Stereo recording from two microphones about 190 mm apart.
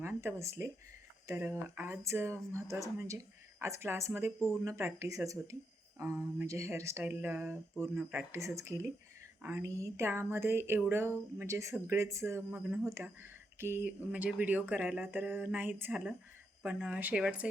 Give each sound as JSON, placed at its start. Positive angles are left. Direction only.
{"t": 0.0, "sound": "speech", "side_deg": -10}